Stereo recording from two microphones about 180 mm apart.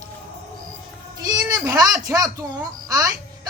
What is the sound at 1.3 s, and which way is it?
Speech, 20° right (ahead or behind).